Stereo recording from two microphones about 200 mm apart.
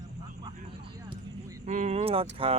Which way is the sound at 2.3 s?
30° right (ahead or behind).